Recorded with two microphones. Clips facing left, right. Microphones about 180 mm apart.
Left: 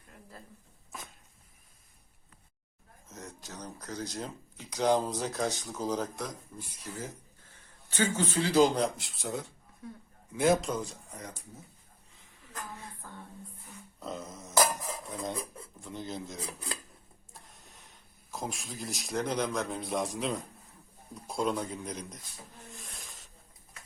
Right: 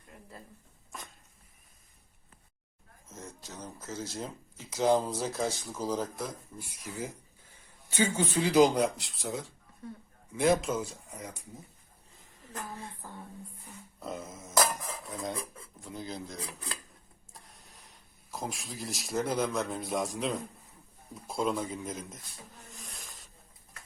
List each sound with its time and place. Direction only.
0.1 s a sound: centre (ahead or behind)
3.1 s speech: centre (ahead or behind)
9.0 s speech: centre (ahead or behind)
13.0 s speech: 15° right (ahead or behind)
14.0 s a sound: 5° right (ahead or behind)
15.0 s stir: centre (ahead or behind)
15.8 s speech: centre (ahead or behind)
17.3 s a sound: centre (ahead or behind)
19.5 s speech: centre (ahead or behind)